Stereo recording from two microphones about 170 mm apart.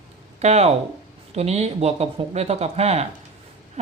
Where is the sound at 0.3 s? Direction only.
40° right (ahead or behind).